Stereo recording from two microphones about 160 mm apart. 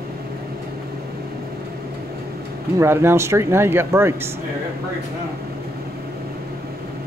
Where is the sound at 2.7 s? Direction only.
15° right (ahead or behind).